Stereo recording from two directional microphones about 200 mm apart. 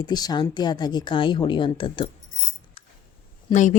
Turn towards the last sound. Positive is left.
turn(degrees=35)  # may be behind; listen again after turning